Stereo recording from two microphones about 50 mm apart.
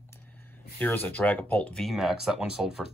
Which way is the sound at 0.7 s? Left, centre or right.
Left.